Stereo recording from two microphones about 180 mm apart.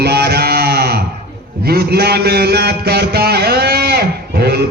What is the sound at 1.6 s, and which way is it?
Mantra, 60° right (ahead or behind).